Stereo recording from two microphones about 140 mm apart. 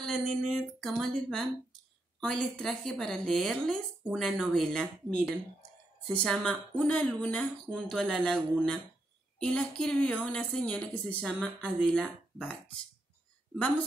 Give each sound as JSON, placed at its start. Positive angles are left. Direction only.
{"t": 0.0, "sound": "a woman's voice", "side_deg": 0}